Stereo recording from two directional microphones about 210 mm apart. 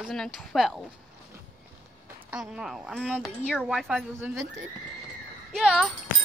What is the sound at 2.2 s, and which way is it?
Speech, 5° right (ahead or behind).